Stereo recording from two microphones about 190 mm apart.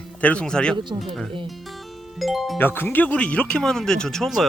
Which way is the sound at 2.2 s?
Centre (ahead or behind).